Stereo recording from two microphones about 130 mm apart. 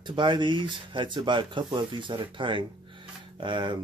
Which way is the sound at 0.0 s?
35° right (ahead or behind).